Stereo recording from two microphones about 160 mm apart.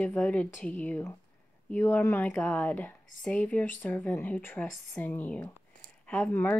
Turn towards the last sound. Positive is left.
turn(degrees=10)  # may be behind; listen again after turning